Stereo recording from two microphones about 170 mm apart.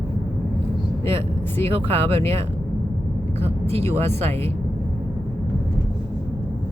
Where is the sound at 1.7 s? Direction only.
35° right (ahead or behind).